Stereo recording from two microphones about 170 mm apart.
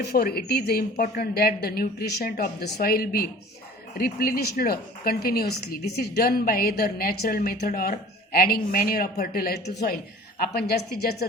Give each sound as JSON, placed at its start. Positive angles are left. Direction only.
{"t": 0.0, "sound": "a woman's voice", "side_deg": 65}